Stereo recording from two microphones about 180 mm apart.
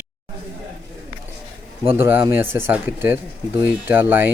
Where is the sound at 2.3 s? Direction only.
10° right (ahead or behind).